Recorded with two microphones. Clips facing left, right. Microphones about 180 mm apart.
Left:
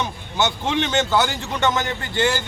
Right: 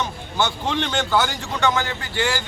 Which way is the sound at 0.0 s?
20° left (ahead or behind).